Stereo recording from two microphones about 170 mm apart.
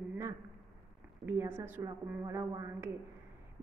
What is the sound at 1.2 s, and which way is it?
A woman's voice, 15° right (ahead or behind).